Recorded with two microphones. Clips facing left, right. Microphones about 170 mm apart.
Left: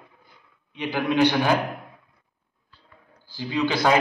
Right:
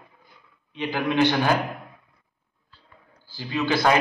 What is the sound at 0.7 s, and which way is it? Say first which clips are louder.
Speech: even; 15° left (ahead or behind).